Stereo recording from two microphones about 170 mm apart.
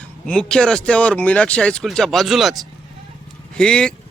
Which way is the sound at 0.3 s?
5° left (ahead or behind).